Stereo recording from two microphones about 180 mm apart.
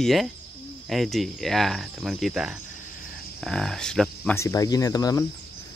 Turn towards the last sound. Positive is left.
turn(degrees=20)  # may be behind; listen again after turning